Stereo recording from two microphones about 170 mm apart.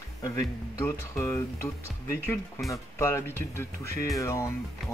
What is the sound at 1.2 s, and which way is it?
Speech, 15° left (ahead or behind).